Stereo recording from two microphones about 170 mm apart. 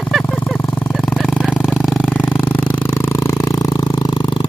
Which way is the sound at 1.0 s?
5° left (ahead or behind).